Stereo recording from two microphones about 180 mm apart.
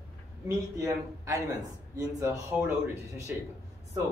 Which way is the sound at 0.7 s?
15° right (ahead or behind).